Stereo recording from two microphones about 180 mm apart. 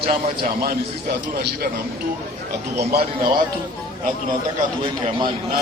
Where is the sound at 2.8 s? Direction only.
55° right (ahead or behind).